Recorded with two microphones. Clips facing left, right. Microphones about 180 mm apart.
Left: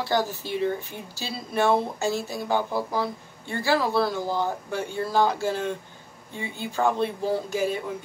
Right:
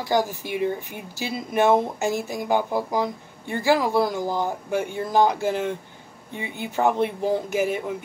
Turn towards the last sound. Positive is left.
turn(degrees=-20)  # may be behind; listen again after turning